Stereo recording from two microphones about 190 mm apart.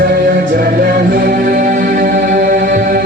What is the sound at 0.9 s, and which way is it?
Music, 55° right (ahead or behind).